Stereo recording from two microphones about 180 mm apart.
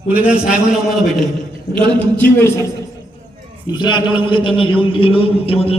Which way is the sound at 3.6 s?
25° left (ahead or behind).